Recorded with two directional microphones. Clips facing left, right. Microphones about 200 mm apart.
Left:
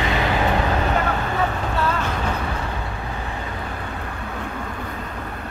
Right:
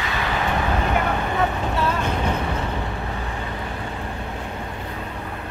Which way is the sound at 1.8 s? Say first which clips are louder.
Right 1 dB; 15° right (ahead or behind).